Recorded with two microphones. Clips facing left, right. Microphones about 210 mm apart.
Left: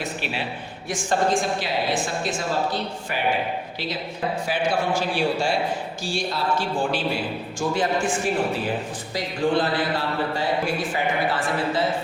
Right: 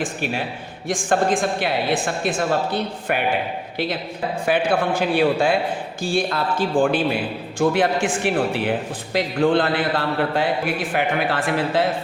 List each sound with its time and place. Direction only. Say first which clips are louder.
0.0 s a man's voice: right 4 dB; 45° right (ahead or behind)
4.4 s a woman's voice: right 5 dB; 60° right (ahead or behind)
7.6 s a woman's voice: right 5 dB; 65° right (ahead or behind)
9.1 s a woman's voice: right 4 dB; 60° right (ahead or behind)